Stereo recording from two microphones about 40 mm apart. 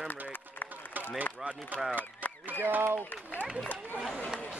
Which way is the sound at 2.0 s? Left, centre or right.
Left.